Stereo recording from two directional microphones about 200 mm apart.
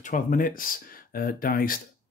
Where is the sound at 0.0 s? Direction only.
45° left (ahead or behind).